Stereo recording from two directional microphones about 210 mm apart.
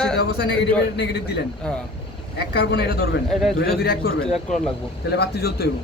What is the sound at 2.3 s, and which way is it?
Speech, 50° left (ahead or behind).